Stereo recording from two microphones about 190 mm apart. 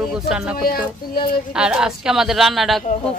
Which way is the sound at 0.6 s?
50° left (ahead or behind).